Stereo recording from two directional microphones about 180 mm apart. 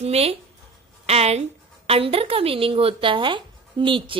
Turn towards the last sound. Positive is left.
turn(degrees=-30)  # may be behind; listen again after turning